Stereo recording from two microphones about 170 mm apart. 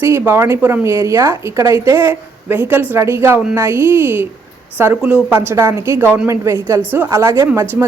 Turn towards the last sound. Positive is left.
turn(degrees=-15)  # may be behind; listen again after turning